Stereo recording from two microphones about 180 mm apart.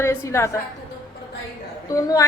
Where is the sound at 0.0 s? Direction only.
15° left (ahead or behind).